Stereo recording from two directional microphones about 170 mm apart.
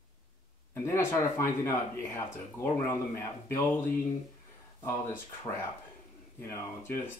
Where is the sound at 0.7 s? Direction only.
15° left (ahead or behind).